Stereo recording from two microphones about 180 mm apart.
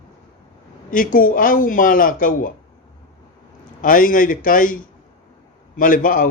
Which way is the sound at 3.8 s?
50° left (ahead or behind).